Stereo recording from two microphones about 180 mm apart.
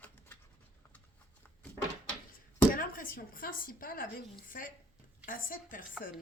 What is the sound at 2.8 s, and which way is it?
A woman's voice, 50° left (ahead or behind).